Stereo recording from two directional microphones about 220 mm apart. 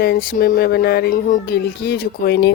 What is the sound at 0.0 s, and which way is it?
Speech, 45° left (ahead or behind).